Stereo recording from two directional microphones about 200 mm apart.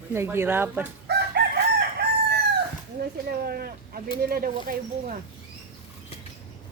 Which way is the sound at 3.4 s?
50° right (ahead or behind).